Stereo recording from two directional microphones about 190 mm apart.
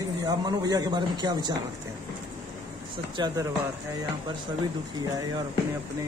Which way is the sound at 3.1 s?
20° right (ahead or behind).